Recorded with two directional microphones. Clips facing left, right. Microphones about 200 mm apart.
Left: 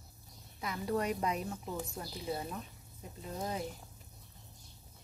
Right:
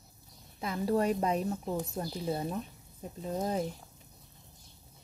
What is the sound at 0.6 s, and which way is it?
A woman's voice, 30° right (ahead or behind).